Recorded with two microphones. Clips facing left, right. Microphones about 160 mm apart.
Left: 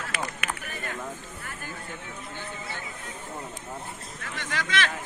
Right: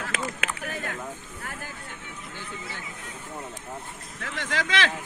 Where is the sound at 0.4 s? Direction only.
90° right.